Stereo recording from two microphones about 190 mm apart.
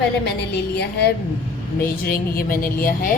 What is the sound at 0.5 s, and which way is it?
A woman's voice, 60° left (ahead or behind).